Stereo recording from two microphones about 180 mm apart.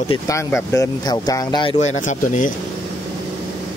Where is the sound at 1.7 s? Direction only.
40° left (ahead or behind).